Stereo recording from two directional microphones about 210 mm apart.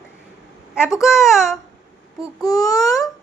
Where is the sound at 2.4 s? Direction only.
15° left (ahead or behind).